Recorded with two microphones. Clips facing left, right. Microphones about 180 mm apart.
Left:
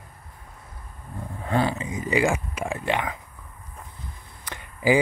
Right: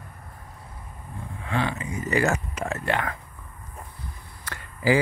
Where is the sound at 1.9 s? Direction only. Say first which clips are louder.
Left 1 dB; 15° left (ahead or behind).